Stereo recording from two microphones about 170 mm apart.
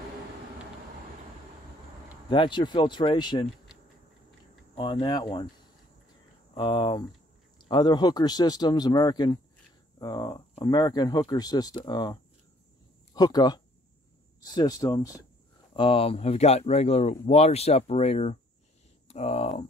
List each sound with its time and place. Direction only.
2.2 s a man's voice: 30° left (ahead or behind)
4.7 s a man's voice: 30° left (ahead or behind)
6.5 s a man's voice: 25° left (ahead or behind)
15.7 s speech: 30° left (ahead or behind)